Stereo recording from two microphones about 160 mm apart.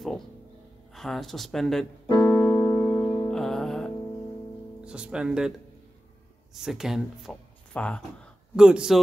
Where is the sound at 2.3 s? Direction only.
25° left (ahead or behind).